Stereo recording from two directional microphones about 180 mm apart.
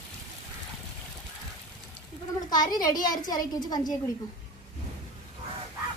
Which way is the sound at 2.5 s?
20° left (ahead or behind).